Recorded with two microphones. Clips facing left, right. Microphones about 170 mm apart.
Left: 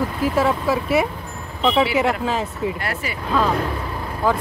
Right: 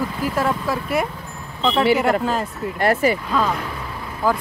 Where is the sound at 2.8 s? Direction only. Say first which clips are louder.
Right 10 dB; 45° right (ahead or behind).